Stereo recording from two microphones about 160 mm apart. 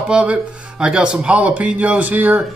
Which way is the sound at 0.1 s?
5° right (ahead or behind).